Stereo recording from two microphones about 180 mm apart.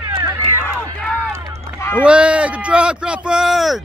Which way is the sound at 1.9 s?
5° right (ahead or behind).